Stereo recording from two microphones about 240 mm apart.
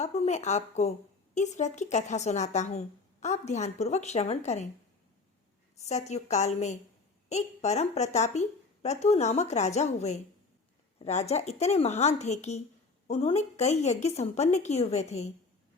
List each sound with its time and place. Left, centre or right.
0.0 s a woman's voice: left
5.8 s a woman's voice: left